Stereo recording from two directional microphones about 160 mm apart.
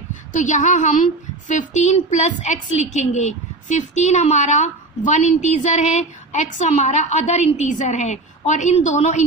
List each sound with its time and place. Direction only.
0.3 s a woman's voice: 50° left (ahead or behind)